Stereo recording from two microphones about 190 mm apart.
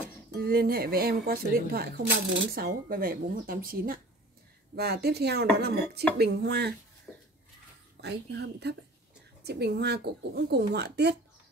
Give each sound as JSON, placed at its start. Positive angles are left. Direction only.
{"t": 0.4, "sound": "speech", "side_deg": -50}
{"t": 7.1, "sound": "a sound", "side_deg": 5}
{"t": 8.0, "sound": "speech", "side_deg": -65}